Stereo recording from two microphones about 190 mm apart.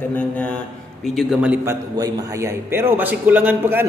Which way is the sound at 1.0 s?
Centre (ahead or behind).